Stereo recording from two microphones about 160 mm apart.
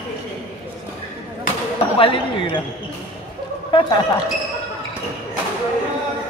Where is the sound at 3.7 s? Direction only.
30° left (ahead or behind).